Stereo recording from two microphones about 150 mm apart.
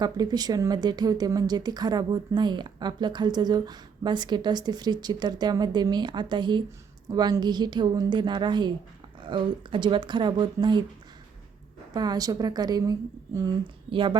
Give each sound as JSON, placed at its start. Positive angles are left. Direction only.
{"t": 0.0, "sound": "speech", "side_deg": -25}
{"t": 11.9, "sound": "speech", "side_deg": -25}
{"t": 13.9, "sound": "speech", "side_deg": -35}